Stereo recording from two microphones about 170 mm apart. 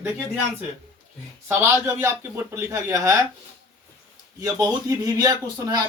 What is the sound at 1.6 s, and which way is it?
Speech, 15° right (ahead or behind).